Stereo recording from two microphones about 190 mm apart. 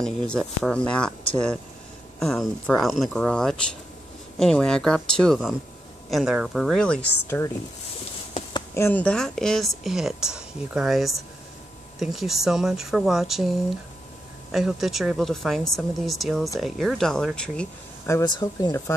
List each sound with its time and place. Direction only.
0.0 s speech: 5° left (ahead or behind)
2.1 s speech: centre (ahead or behind)
8.7 s speech: 10° left (ahead or behind)
18.0 s speech: 15° left (ahead or behind)